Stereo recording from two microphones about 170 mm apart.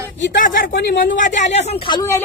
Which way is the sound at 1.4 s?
40° left (ahead or behind).